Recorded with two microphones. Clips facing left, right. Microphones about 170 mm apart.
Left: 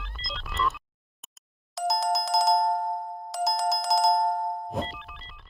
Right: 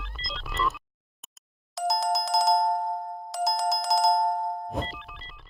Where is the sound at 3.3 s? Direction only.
Centre (ahead or behind).